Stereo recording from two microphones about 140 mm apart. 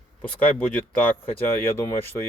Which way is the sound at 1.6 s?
15° left (ahead or behind).